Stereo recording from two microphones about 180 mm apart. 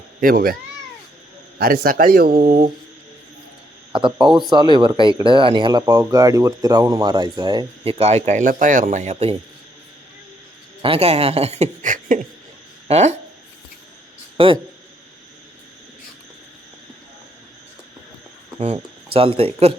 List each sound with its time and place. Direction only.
0.2 s speech: 50° right (ahead or behind)
1.5 s speech: 55° right (ahead or behind)
3.9 s speech: 25° right (ahead or behind)
10.8 s speech: 35° right (ahead or behind)
14.3 s speech: 30° right (ahead or behind)
18.6 s speech: 35° right (ahead or behind)